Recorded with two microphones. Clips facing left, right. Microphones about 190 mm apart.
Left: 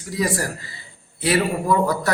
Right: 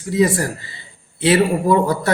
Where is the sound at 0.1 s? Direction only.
25° right (ahead or behind).